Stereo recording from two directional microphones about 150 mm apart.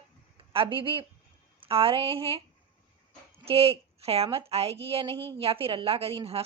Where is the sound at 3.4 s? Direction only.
40° right (ahead or behind).